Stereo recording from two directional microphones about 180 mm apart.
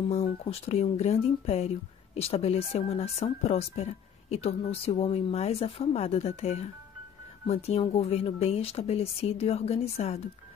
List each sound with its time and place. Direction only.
0.5 s speech: 35° left (ahead or behind)